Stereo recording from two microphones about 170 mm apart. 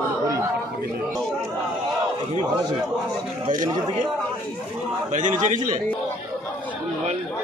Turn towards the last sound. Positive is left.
turn(degrees=-50)  # may be behind; listen again after turning